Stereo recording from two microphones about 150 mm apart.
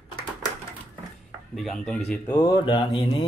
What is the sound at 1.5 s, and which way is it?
Speech, centre (ahead or behind).